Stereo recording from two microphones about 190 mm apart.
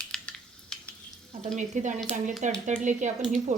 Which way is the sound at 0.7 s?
5° left (ahead or behind).